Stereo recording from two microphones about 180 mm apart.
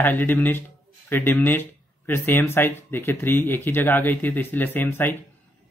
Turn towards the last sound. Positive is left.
turn(degrees=10)  # may be behind; listen again after turning